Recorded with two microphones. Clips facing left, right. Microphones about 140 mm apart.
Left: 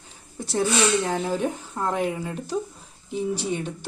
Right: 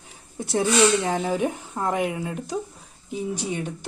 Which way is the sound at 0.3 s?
20° right (ahead or behind).